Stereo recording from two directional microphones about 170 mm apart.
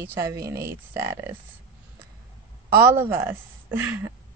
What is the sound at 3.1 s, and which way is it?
A woman's voice, 10° right (ahead or behind).